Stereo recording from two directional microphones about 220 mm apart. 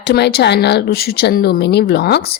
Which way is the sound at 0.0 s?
50° left (ahead or behind).